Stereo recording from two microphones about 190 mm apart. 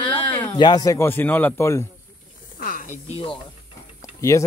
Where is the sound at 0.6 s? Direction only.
20° left (ahead or behind).